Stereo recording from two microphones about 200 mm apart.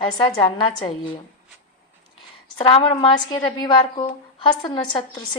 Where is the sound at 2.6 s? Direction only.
25° left (ahead or behind).